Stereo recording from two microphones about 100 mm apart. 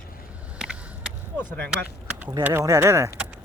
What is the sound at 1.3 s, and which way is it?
Speech, 15° left (ahead or behind).